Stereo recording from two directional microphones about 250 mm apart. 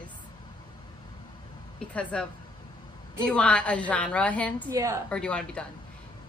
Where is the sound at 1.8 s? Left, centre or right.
Centre.